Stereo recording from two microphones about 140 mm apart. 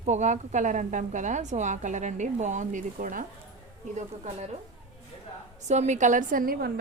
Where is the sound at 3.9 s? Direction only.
55° right (ahead or behind).